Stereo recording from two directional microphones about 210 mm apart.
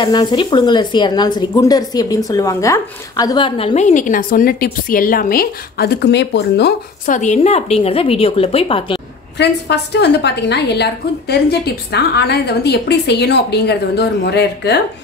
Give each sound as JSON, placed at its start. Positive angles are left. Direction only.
{"t": 0.0, "sound": "speech", "side_deg": 20}
{"t": 7.1, "sound": "speech", "side_deg": 35}
{"t": 9.4, "sound": "a woman's voice", "side_deg": 55}